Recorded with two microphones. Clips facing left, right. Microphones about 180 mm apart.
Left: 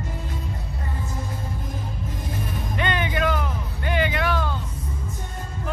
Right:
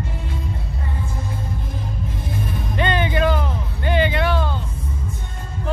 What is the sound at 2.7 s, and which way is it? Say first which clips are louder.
Music: right 5 dB; 30° right (ahead or behind).